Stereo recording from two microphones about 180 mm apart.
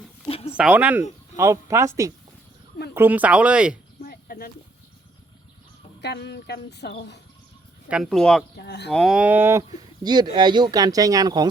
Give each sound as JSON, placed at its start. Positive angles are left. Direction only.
{"t": 0.3, "sound": "a sound", "side_deg": 35}
{"t": 0.5, "sound": "speech", "side_deg": -5}
{"t": 4.0, "sound": "a sound", "side_deg": 55}
{"t": 6.0, "sound": "speech", "side_deg": 65}
{"t": 7.9, "sound": "speech", "side_deg": -5}
{"t": 8.5, "sound": "speech", "side_deg": 65}
{"t": 8.9, "sound": "speech", "side_deg": 0}